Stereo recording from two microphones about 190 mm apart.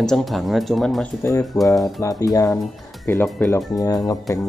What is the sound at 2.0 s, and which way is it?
Speech, 15° left (ahead or behind).